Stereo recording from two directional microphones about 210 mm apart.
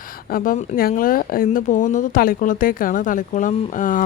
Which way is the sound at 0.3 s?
45° left (ahead or behind).